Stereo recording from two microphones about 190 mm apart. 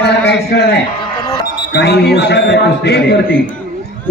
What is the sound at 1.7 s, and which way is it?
A man's voice, 60° left (ahead or behind).